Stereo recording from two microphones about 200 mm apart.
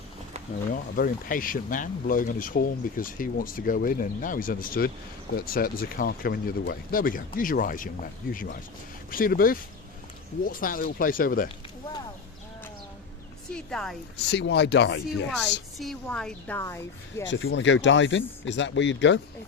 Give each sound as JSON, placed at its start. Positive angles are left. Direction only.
{"t": 0.7, "sound": "speech", "side_deg": 45}
{"t": 13.5, "sound": "speech", "side_deg": 5}
{"t": 14.3, "sound": "speech", "side_deg": 60}
{"t": 15.3, "sound": "a woman's voice", "side_deg": 0}
{"t": 17.2, "sound": "speech", "side_deg": 65}